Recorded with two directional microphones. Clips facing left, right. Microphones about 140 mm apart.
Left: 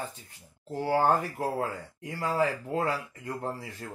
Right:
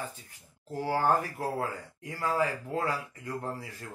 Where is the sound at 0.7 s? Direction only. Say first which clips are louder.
Left 2 dB; 25° left (ahead or behind).